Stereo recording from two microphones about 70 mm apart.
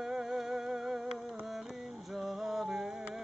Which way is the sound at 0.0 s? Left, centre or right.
Centre.